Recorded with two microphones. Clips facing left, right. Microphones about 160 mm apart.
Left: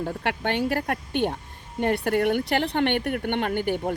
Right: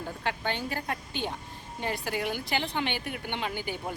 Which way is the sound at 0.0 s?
65° left (ahead or behind).